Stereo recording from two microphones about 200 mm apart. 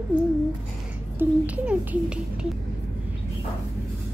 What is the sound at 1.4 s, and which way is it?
Speech, 5° right (ahead or behind).